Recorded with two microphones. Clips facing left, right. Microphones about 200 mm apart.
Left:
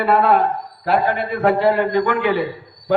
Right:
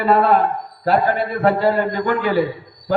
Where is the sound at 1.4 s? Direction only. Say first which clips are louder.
Left 1 dB; 40° right (ahead or behind).